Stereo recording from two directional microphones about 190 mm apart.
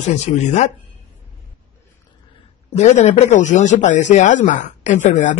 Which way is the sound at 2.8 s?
35° left (ahead or behind).